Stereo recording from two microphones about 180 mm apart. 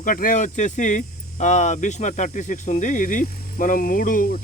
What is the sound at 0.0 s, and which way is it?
Speech, 50° left (ahead or behind).